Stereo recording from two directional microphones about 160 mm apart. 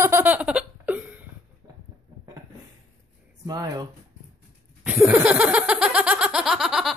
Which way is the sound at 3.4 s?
25° right (ahead or behind).